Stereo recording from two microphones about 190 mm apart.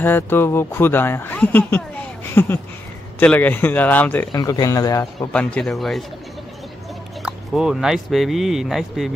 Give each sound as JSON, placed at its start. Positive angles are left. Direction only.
{"t": 0.0, "sound": "speech", "side_deg": 10}
{"t": 5.3, "sound": "speech", "side_deg": 5}
{"t": 7.2, "sound": "speech", "side_deg": -5}